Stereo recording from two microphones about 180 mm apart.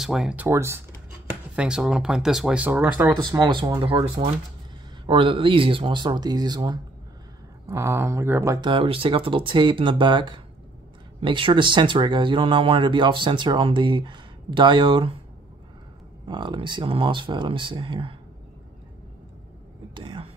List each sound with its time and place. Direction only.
0.0 s speech: 5° right (ahead or behind)
3.3 s speech: 25° right (ahead or behind)
8.5 s speech: 25° right (ahead or behind)
16.3 s speech: 25° right (ahead or behind)
19.9 s speech: 25° right (ahead or behind)